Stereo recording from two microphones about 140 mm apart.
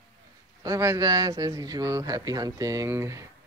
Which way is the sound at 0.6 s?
20° right (ahead or behind).